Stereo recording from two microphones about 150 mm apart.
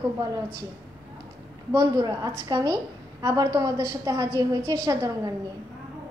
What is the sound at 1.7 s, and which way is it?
A child's voice, 25° right (ahead or behind).